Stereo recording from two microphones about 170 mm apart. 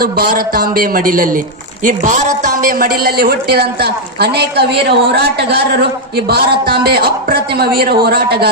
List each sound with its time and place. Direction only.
0.0 s a man's voice: 60° right (ahead or behind)